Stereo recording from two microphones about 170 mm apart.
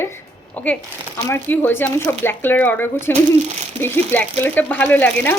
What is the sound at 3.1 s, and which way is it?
Speech, 40° right (ahead or behind).